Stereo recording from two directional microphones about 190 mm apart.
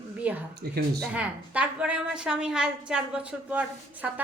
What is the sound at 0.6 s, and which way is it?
Speech, 55° right (ahead or behind).